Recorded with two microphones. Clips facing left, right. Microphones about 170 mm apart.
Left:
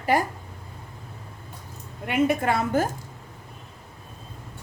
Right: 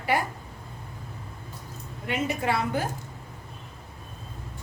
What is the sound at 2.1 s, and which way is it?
Speech, 50° left (ahead or behind).